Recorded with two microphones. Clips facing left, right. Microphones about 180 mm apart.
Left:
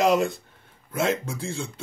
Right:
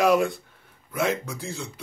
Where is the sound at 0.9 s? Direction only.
25° left (ahead or behind).